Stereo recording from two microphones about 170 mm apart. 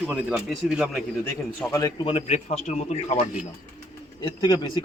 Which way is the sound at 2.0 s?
35° left (ahead or behind).